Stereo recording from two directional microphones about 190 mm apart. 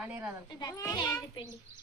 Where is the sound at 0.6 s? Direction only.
20° left (ahead or behind).